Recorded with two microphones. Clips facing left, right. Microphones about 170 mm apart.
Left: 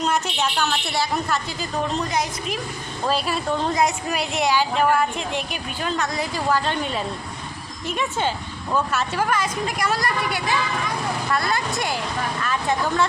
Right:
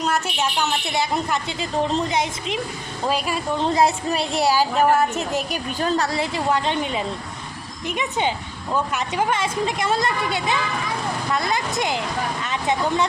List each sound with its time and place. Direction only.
0.0 s a woman's voice: 5° right (ahead or behind)
0.6 s a woman's voice: 20° right (ahead or behind)
3.1 s a woman's voice: 10° right (ahead or behind)
3.8 s a woman's voice: 30° right (ahead or behind)